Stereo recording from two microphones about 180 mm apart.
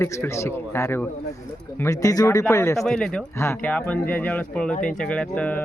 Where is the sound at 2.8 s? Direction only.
Centre (ahead or behind).